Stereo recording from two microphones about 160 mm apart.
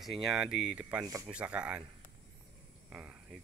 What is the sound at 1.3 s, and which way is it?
Speech, 5° right (ahead or behind).